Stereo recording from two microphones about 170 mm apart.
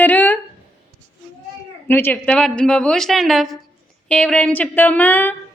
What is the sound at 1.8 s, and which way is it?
A woman's voice, 10° left (ahead or behind).